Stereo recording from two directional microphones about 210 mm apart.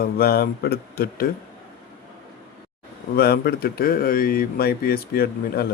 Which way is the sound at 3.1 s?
50° left (ahead or behind).